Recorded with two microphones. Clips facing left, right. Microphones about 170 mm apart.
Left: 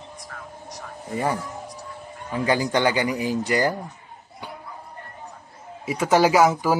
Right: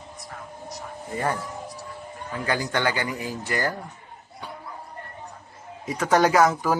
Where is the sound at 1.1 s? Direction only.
10° left (ahead or behind).